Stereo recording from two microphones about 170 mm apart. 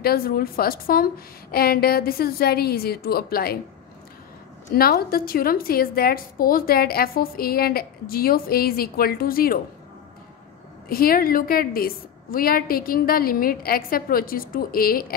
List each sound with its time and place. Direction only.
0.0 s a woman's voice: 60° left (ahead or behind)
4.7 s a woman's voice: 65° left (ahead or behind)
10.9 s a woman's voice: 60° left (ahead or behind)